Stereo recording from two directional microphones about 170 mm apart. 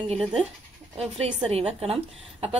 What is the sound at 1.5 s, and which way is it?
Speech, 35° right (ahead or behind).